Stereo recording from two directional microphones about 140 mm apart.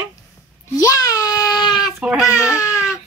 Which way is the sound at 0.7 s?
25° left (ahead or behind).